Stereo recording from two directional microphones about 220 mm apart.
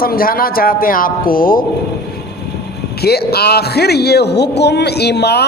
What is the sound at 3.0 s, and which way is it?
A man's voice, 45° left (ahead or behind).